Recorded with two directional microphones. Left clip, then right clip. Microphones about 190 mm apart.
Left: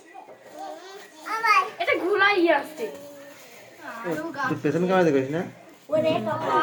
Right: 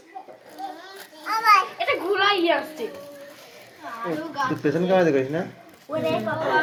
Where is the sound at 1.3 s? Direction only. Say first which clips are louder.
Right 4 dB; 25° right (ahead or behind).